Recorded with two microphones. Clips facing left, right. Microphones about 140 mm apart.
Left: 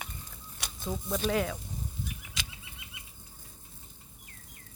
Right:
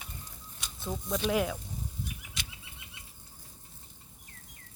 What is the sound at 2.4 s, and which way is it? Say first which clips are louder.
Bird flight: left 3 dB; 90° left.